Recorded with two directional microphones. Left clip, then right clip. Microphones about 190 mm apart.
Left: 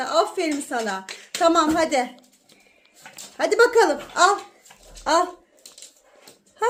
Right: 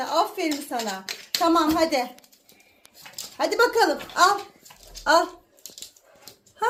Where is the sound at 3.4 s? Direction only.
25° left (ahead or behind).